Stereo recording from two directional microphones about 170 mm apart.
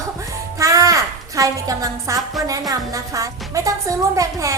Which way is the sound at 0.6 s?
20° right (ahead or behind).